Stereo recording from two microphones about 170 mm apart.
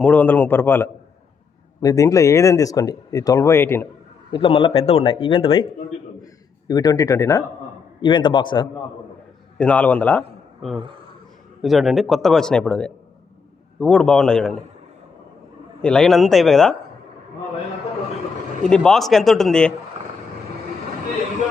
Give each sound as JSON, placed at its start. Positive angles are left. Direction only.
{"t": 0.0, "sound": "a man's voice", "side_deg": 10}
{"t": 4.3, "sound": "speech", "side_deg": 30}
{"t": 6.7, "sound": "speech", "side_deg": 25}
{"t": 8.0, "sound": "speech", "side_deg": 30}
{"t": 9.6, "sound": "a man's voice", "side_deg": 5}
{"t": 15.8, "sound": "a man's voice", "side_deg": 5}
{"t": 18.7, "sound": "a man's voice", "side_deg": 5}